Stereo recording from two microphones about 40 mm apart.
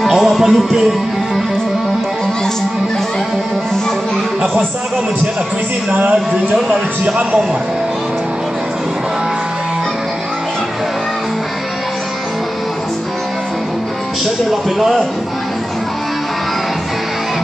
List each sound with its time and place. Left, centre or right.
0.1 s speech: centre
5.9 s speech: right
14.2 s a man's voice: centre